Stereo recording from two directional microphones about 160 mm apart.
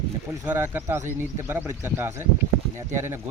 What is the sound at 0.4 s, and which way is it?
Speech, 15° right (ahead or behind).